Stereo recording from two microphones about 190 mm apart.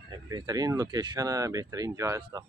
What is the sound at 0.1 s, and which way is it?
Speech, 20° right (ahead or behind).